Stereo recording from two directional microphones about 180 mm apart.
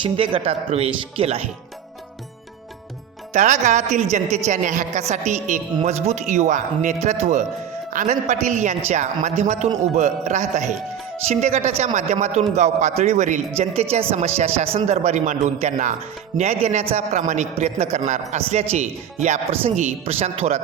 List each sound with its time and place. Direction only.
0.0 s a woman's voice: 30° right (ahead or behind)
3.3 s a woman's voice: 40° right (ahead or behind)